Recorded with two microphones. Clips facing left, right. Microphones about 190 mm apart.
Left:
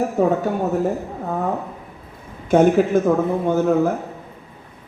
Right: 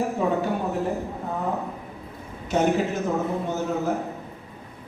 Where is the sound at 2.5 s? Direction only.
50° left (ahead or behind).